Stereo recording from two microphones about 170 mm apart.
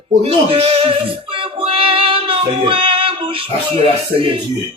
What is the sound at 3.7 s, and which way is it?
Music, 30° right (ahead or behind).